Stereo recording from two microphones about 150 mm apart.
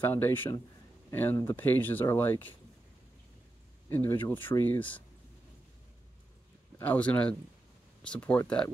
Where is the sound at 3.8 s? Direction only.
15° left (ahead or behind).